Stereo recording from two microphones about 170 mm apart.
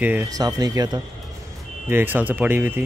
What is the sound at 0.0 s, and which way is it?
Speech, 10° right (ahead or behind).